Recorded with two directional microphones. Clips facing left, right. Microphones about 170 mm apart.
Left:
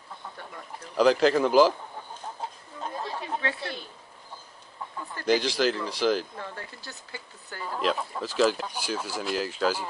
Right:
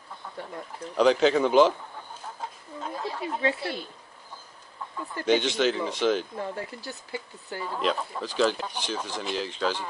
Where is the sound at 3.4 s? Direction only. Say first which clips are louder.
Right 5 dB; 25° right (ahead or behind).